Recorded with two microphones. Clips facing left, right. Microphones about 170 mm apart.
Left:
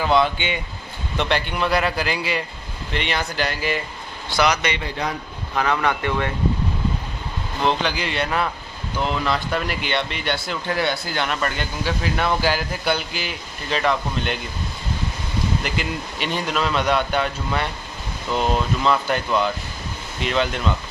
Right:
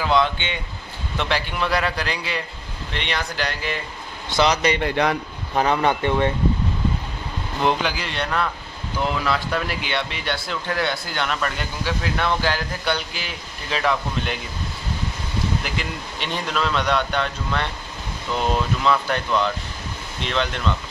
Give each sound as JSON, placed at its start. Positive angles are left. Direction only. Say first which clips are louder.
{"t": 0.0, "sound": "speech", "louder": "left 1 dB", "side_deg": 5}
{"t": 4.3, "sound": "speech", "louder": "right 1 dB", "side_deg": -25}
{"t": 4.7, "sound": "a man's voice", "louder": "right 6 dB", "side_deg": -65}
{"t": 5.5, "sound": "speech", "louder": "right 2 dB", "side_deg": -30}
{"t": 7.6, "sound": "speech", "louder": "even", "side_deg": -5}
{"t": 15.6, "sound": "speech", "louder": "left 3 dB", "side_deg": 0}